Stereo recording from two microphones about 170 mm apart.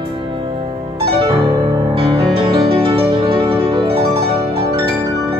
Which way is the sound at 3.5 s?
30° right (ahead or behind).